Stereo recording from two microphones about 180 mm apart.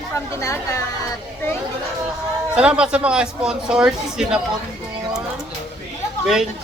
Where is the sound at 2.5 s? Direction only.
5° right (ahead or behind).